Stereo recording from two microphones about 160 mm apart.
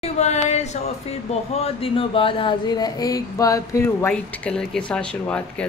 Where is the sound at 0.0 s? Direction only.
45° left (ahead or behind); by 4.1 s 15° left (ahead or behind).